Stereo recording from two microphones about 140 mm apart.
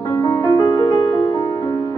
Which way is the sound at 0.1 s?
25° left (ahead or behind).